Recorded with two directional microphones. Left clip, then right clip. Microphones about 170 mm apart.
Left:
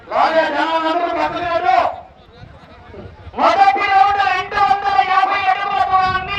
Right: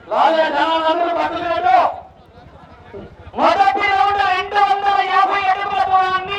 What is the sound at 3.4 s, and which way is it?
Speech, 25° right (ahead or behind).